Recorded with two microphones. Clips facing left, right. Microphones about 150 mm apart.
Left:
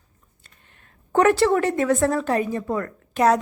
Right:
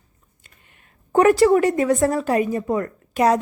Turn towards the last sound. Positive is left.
turn(degrees=-15)  # may be behind; listen again after turning